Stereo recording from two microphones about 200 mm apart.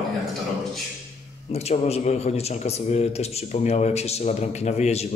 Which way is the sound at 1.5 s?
30° left (ahead or behind).